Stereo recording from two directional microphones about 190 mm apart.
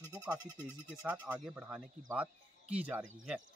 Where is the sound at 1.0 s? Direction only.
5° right (ahead or behind).